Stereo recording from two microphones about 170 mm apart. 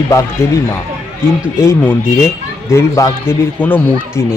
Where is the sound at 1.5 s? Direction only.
15° left (ahead or behind).